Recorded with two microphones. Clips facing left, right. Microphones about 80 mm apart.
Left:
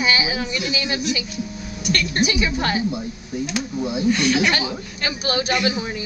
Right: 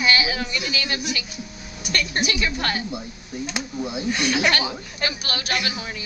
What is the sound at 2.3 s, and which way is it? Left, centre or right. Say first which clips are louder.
Speech: left 3 dB; centre.